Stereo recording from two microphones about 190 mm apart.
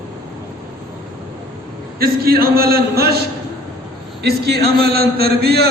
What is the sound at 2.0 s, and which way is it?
A man's voice, 50° right (ahead or behind).